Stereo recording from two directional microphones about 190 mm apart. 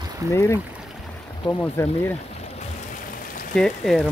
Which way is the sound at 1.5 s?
25° left (ahead or behind).